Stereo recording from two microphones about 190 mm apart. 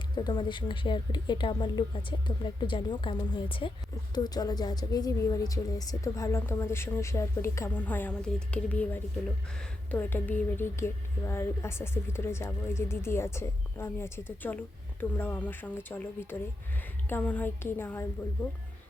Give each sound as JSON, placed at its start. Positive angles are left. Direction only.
{"t": 0.2, "sound": "a woman's voice", "side_deg": 25}